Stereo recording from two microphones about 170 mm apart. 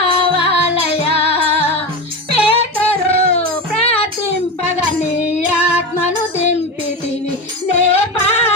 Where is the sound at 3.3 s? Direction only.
35° left (ahead or behind).